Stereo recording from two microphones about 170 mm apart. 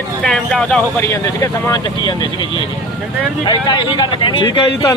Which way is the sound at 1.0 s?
15° left (ahead or behind).